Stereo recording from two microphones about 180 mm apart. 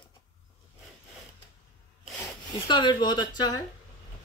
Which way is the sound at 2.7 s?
25° left (ahead or behind).